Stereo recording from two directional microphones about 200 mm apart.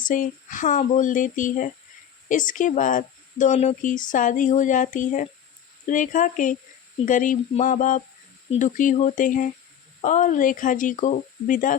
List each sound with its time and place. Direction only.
0.0 s speech: 40° left (ahead or behind)